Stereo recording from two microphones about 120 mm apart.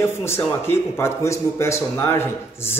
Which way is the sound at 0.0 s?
20° left (ahead or behind).